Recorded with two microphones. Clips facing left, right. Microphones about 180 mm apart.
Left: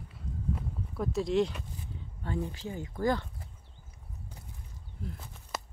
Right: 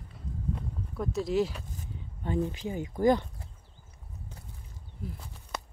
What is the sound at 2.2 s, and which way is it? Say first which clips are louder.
Speech: right 5 dB; 20° right (ahead or behind).